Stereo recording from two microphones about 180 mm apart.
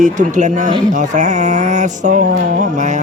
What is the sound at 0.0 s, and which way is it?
A man's voice, 45° right (ahead or behind).